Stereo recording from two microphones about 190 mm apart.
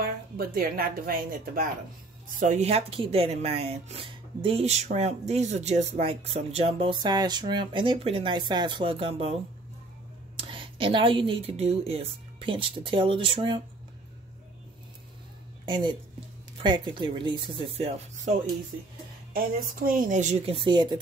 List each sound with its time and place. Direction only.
0.0 s speech: 50° right (ahead or behind); by 13.6 s 25° right (ahead or behind)
15.6 s a woman's voice: 25° right (ahead or behind)
19.3 s speech: 50° right (ahead or behind); by 21.0 s 25° right (ahead or behind)